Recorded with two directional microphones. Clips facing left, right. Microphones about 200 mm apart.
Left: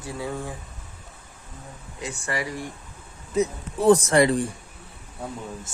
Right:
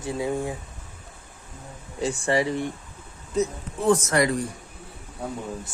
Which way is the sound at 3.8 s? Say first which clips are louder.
Left 4 dB; 35° left (ahead or behind).